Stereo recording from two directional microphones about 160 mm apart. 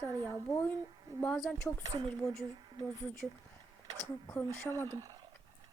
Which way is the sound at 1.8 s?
30° right (ahead or behind).